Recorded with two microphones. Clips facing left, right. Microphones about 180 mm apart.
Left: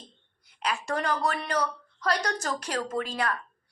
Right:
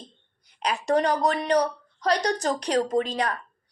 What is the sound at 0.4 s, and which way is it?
A woman's voice, 35° right (ahead or behind).